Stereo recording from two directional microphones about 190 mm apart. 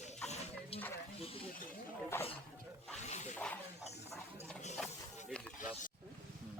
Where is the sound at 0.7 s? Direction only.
30° left (ahead or behind).